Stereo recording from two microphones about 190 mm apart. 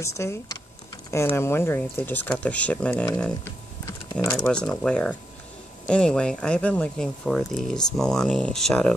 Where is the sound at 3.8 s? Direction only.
15° left (ahead or behind).